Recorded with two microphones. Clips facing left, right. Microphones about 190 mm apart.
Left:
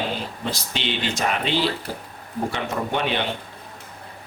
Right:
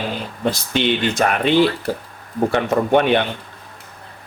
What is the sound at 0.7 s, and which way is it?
Speech, 55° right (ahead or behind).